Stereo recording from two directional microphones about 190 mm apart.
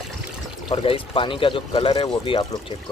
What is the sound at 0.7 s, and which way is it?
Speech, 30° left (ahead or behind).